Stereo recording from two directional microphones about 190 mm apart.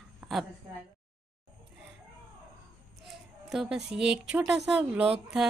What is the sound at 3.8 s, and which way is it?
A woman's voice, 5° right (ahead or behind).